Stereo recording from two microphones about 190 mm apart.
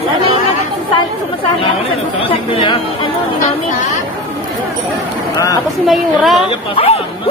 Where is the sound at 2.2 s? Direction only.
25° left (ahead or behind).